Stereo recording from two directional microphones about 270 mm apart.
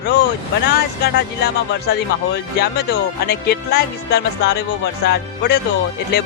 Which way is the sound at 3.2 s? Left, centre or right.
Left.